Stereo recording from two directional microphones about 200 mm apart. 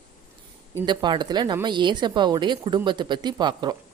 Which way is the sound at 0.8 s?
20° right (ahead or behind).